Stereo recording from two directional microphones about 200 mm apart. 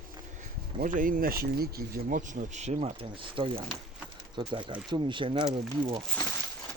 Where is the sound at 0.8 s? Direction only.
45° right (ahead or behind).